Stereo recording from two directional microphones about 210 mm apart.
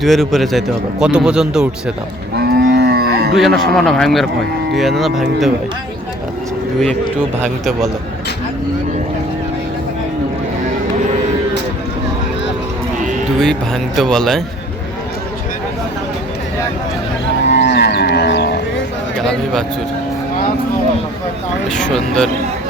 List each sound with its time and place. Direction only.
0.0 s speech: centre (ahead or behind)
2.3 s moo: 50° right (ahead or behind)
3.3 s speech: centre (ahead or behind)
7.4 s speech: centre (ahead or behind)
13.4 s speech: centre (ahead or behind)
17.7 s a sound: 55° left (ahead or behind)
21.8 s speech: 5° left (ahead or behind)